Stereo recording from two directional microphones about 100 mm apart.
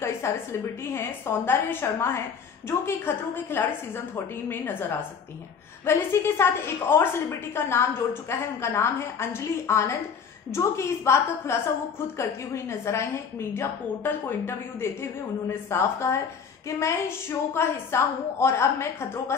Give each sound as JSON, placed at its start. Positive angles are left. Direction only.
{"t": 0.0, "sound": "a woman's voice", "side_deg": 25}